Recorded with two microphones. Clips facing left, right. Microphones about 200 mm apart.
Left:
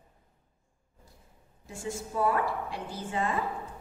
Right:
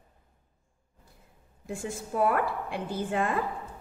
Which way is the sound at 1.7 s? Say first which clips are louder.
Right 2 dB; 55° right (ahead or behind).